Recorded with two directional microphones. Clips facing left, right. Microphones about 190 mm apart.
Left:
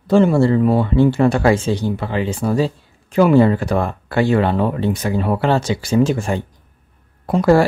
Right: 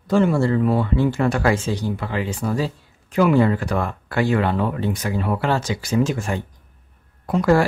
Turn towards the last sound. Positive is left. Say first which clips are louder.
# left 4 dB
turn(degrees=30)  # may be behind; listen again after turning